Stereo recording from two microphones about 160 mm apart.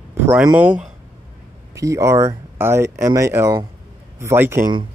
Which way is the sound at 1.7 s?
20° right (ahead or behind).